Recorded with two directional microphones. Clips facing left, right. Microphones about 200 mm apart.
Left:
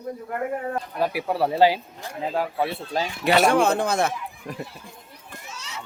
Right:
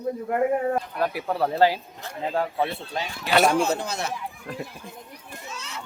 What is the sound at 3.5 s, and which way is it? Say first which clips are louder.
Speech: left 3 dB; 55° left (ahead or behind).